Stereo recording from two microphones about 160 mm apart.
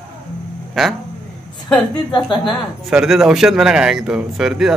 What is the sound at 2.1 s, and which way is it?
Speech, 30° left (ahead or behind).